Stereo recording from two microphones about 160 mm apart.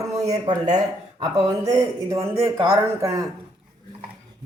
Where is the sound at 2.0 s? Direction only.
15° right (ahead or behind).